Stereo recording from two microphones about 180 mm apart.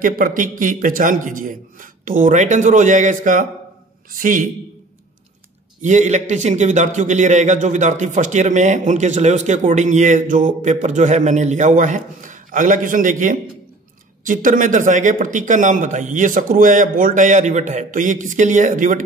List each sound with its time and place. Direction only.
0.0 s speech: 50° right (ahead or behind)
5.8 s a man's voice: 40° right (ahead or behind)